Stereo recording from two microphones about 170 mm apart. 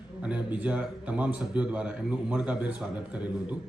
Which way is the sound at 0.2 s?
5° right (ahead or behind).